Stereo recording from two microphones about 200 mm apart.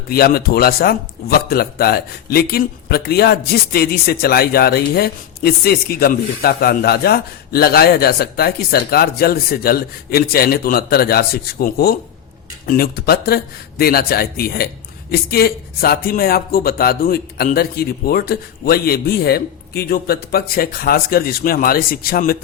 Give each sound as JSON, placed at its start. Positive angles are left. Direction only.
{"t": 0.1, "sound": "speech", "side_deg": 50}